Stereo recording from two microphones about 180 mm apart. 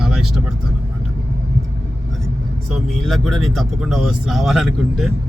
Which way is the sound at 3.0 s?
Centre (ahead or behind).